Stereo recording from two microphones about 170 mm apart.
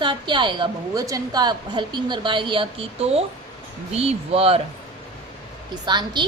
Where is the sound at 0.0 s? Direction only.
30° right (ahead or behind).